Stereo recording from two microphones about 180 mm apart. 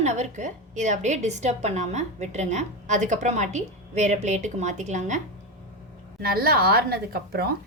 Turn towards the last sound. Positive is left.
turn(degrees=-60)  # may be behind; listen again after turning